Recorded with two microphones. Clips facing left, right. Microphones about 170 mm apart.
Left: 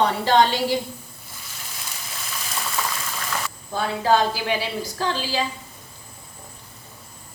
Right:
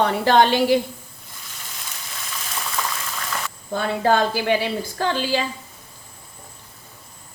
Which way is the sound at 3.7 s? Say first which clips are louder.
Right 1 dB; 55° right (ahead or behind).